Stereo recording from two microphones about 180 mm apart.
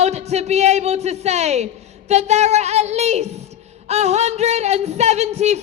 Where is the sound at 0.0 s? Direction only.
35° right (ahead or behind).